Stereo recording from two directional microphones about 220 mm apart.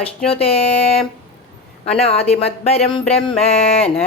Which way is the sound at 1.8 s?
25° left (ahead or behind).